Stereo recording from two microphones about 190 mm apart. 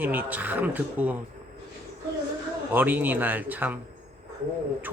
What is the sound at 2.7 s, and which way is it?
Speech, 10° right (ahead or behind).